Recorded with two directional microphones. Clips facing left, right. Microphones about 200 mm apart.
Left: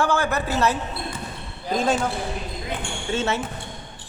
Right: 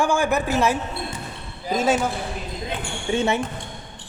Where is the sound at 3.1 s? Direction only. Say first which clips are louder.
Right 3 dB; 15° right (ahead or behind).